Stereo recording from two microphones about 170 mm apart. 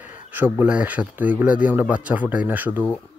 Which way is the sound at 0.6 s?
10° right (ahead or behind).